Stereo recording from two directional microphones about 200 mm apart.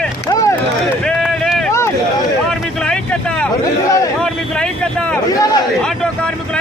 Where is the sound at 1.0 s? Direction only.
Centre (ahead or behind).